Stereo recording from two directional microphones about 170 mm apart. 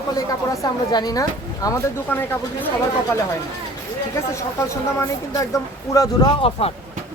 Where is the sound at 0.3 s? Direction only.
20° left (ahead or behind).